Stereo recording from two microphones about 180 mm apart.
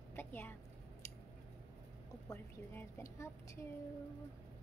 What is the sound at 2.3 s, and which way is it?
A woman's voice, 15° left (ahead or behind).